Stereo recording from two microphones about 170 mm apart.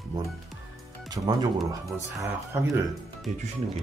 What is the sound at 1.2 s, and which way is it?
Speech, 25° right (ahead or behind).